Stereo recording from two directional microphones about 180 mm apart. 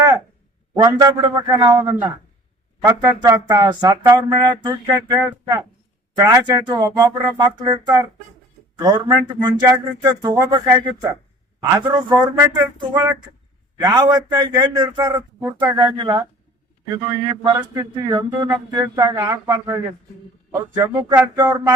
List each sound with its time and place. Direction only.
0.8 s speech: 20° right (ahead or behind)
17.4 s speech: 20° right (ahead or behind)
21.3 s a sound: 10° right (ahead or behind)